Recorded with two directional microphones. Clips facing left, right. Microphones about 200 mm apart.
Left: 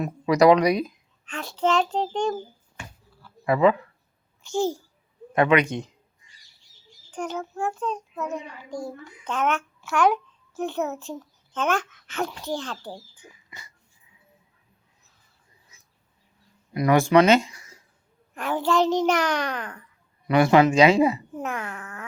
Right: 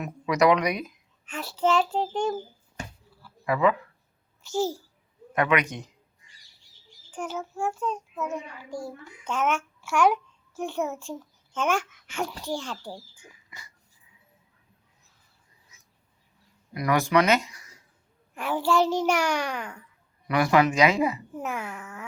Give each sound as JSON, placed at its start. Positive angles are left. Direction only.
{"t": 0.0, "sound": "speech", "side_deg": 35}
{"t": 1.2, "sound": "a child's voice", "side_deg": -5}
{"t": 3.4, "sound": "speech", "side_deg": 30}
{"t": 4.4, "sound": "a child's voice", "side_deg": -5}
{"t": 5.3, "sound": "speech", "side_deg": 30}
{"t": 7.1, "sound": "a child's voice", "side_deg": -5}
{"t": 13.5, "sound": "dog", "side_deg": 25}
{"t": 15.7, "sound": "a sound", "side_deg": 30}
{"t": 16.7, "sound": "speech", "side_deg": 25}
{"t": 18.3, "sound": "a child's voice", "side_deg": -10}
{"t": 20.2, "sound": "speech", "side_deg": 25}
{"t": 21.3, "sound": "a child's voice", "side_deg": -5}